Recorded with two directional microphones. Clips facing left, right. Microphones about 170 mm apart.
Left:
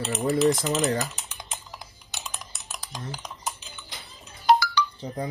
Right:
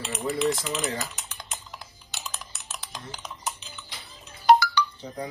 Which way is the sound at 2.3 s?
15° left (ahead or behind).